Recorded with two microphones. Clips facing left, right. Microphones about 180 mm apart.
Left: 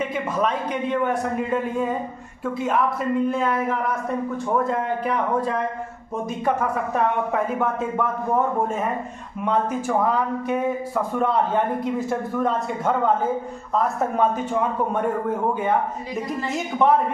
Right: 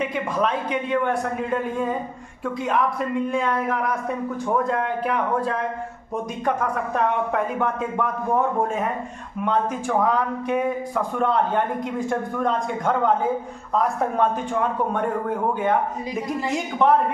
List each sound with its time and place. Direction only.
0.0 s a man's voice: 5° left (ahead or behind)
9.4 s speech: 5° left (ahead or behind)
16.5 s a woman's voice: 10° left (ahead or behind)